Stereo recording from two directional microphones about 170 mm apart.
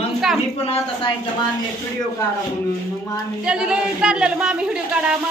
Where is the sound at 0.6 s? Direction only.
35° left (ahead or behind).